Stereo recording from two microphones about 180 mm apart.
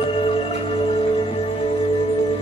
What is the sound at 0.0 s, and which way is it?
Music, 30° left (ahead or behind).